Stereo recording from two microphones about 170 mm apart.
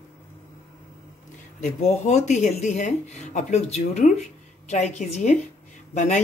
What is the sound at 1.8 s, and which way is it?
Speech, 40° left (ahead or behind).